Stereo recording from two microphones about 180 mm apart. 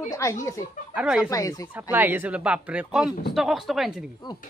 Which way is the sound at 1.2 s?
20° left (ahead or behind).